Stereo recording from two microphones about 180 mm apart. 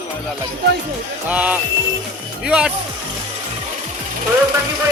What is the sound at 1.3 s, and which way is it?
Speech, 10° right (ahead or behind).